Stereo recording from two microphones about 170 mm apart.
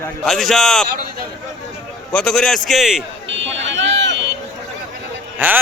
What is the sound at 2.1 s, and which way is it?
Speech, 5° left (ahead or behind).